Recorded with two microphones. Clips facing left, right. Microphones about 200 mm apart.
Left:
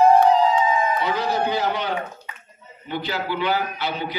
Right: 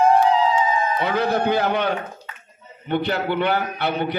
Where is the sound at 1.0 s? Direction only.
55° right (ahead or behind).